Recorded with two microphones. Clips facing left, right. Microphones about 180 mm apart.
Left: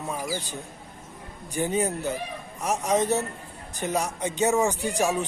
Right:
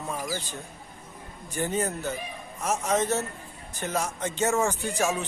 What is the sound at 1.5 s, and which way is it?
A man's voice, 15° left (ahead or behind).